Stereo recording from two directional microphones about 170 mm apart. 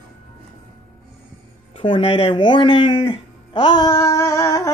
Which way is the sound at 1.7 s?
30° left (ahead or behind).